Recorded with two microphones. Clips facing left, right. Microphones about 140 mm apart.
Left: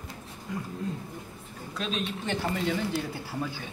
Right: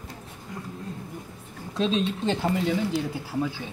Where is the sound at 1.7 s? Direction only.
30° right (ahead or behind).